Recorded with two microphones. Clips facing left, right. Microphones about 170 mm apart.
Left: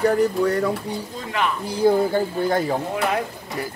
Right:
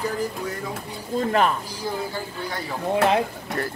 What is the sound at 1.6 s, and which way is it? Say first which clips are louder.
Speech: left 11 dB; 55° left (ahead or behind).